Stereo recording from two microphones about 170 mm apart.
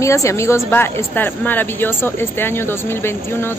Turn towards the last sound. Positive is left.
turn(degrees=15)  # may be behind; listen again after turning